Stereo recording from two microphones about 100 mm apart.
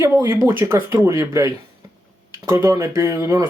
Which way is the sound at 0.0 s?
35° right (ahead or behind).